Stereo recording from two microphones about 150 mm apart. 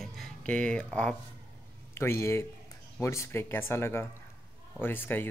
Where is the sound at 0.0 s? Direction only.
5° left (ahead or behind).